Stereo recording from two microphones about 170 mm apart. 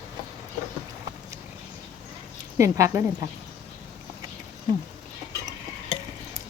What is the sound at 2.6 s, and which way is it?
Speech, 15° right (ahead or behind).